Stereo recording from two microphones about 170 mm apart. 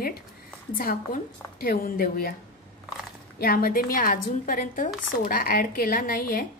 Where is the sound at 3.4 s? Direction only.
60° left (ahead or behind).